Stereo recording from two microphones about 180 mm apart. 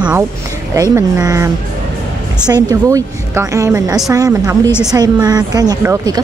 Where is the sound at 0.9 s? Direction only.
20° right (ahead or behind).